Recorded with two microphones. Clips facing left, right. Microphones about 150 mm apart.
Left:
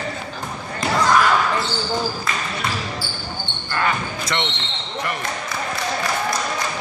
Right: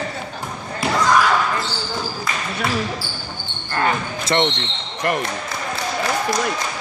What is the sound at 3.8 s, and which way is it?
Basketball bounce, 35° right (ahead or behind).